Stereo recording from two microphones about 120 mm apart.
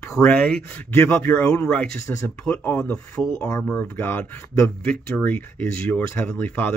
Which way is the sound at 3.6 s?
10° left (ahead or behind).